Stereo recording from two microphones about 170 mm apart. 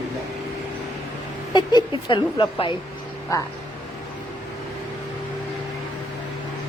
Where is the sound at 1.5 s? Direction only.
25° left (ahead or behind).